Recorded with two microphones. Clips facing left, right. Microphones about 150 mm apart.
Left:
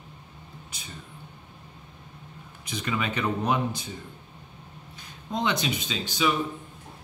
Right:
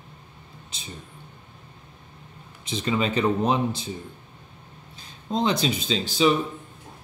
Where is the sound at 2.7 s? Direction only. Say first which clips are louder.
Right 5 dB; 25° right (ahead or behind).